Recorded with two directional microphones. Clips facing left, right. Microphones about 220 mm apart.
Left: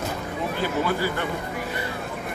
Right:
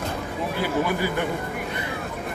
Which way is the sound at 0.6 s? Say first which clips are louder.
Right 1 dB; 15° right (ahead or behind).